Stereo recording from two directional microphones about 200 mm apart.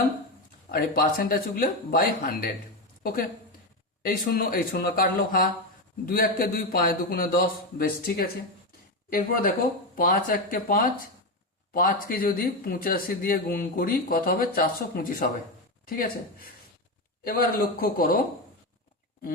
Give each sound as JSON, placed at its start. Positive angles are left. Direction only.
{"t": 0.7, "sound": "a woman's voice", "side_deg": 45}